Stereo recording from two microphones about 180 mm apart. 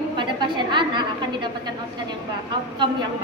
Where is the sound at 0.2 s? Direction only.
25° right (ahead or behind).